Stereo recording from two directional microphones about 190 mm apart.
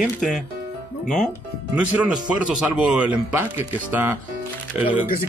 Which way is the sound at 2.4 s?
5° right (ahead or behind).